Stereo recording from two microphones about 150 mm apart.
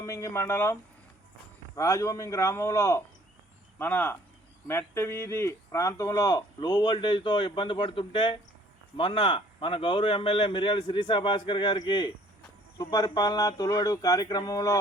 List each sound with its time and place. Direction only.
0.0 s a man's voice: 20° left (ahead or behind)